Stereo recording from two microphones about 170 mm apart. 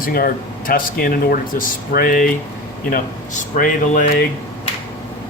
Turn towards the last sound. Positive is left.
turn(degrees=50)  # may be behind; listen again after turning